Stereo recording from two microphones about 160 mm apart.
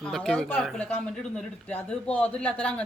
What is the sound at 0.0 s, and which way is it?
A man's voice, 5° left (ahead or behind).